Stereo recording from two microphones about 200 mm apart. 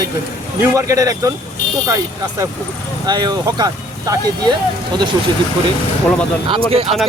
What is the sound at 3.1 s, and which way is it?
Speech, 20° right (ahead or behind).